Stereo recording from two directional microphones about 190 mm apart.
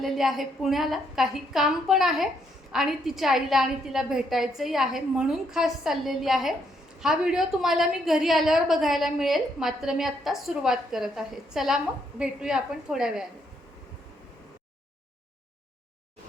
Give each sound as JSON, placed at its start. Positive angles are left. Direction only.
{"t": 0.0, "sound": "a woman's voice", "side_deg": 0}